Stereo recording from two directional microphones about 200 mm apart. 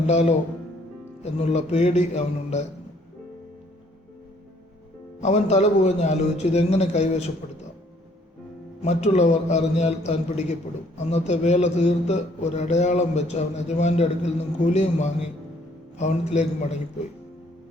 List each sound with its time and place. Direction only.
0.1 s a man's voice: 35° left (ahead or behind)
5.2 s a man's voice: 35° left (ahead or behind)
8.8 s a man's voice: 35° left (ahead or behind)